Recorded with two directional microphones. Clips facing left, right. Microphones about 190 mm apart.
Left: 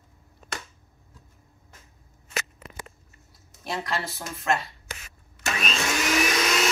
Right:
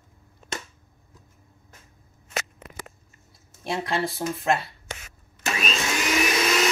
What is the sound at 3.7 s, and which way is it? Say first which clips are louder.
Speech: right 4 dB; 25° right (ahead or behind).